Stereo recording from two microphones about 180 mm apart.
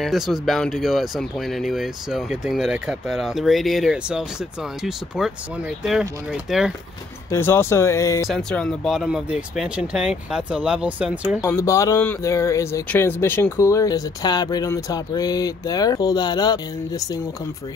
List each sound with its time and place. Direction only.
0.0 s speech: centre (ahead or behind)
7.2 s speech: 15° left (ahead or behind)
8.3 s speech: 5° left (ahead or behind)
11.4 s speech: 15° left (ahead or behind)